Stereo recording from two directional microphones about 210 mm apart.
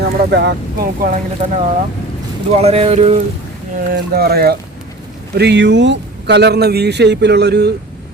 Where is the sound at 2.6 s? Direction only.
30° right (ahead or behind).